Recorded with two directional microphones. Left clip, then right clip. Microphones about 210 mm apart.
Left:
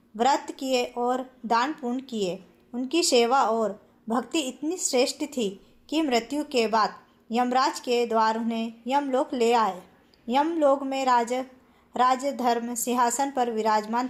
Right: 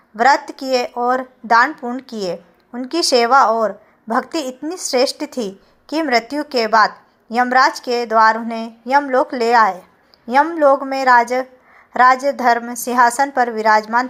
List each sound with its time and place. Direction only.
0.2 s a woman's voice: 15° right (ahead or behind)